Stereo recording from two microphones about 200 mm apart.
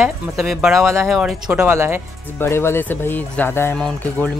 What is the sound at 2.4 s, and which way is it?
Speech, 10° left (ahead or behind).